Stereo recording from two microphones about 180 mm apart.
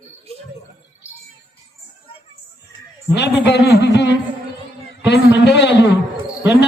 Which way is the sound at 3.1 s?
70° left (ahead or behind).